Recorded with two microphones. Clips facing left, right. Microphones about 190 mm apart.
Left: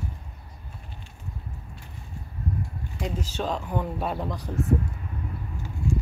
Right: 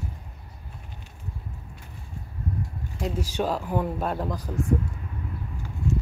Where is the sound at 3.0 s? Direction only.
Centre (ahead or behind).